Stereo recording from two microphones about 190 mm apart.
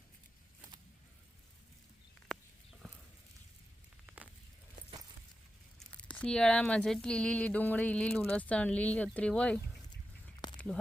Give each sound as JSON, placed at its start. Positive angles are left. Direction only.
{"t": 4.0, "sound": "walk", "side_deg": -10}
{"t": 5.9, "sound": "speech", "side_deg": 5}
{"t": 10.4, "sound": "a sound", "side_deg": 20}